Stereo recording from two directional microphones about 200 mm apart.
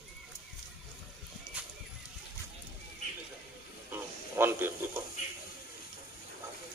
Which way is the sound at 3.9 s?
10° right (ahead or behind).